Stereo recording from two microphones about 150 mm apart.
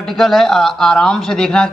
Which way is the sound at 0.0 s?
Centre (ahead or behind).